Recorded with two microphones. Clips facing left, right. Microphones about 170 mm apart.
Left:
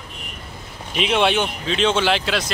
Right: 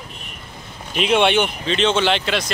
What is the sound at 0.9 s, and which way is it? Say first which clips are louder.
Speech: right 2 dB; centre (ahead or behind).